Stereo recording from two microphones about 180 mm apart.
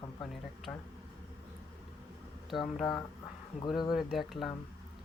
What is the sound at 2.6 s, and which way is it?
Speech, centre (ahead or behind).